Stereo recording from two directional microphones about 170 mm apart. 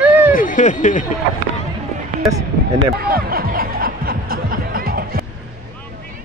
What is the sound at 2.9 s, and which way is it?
Snicker, 60° right (ahead or behind).